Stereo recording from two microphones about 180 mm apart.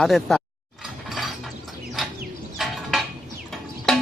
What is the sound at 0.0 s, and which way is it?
Speech, centre (ahead or behind).